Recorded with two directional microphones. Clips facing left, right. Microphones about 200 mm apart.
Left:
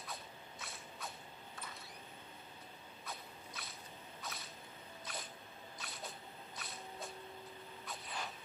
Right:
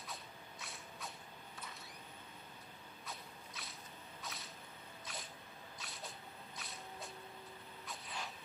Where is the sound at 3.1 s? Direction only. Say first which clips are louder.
Left 2 dB; centre (ahead or behind).